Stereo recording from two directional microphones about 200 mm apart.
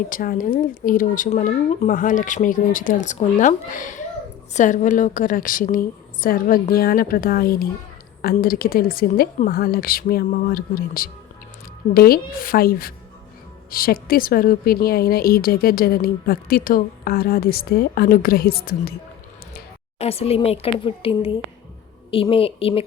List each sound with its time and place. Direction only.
0.1 s a woman's voice: 45° left (ahead or behind)
20.0 s a woman's voice: 30° left (ahead or behind)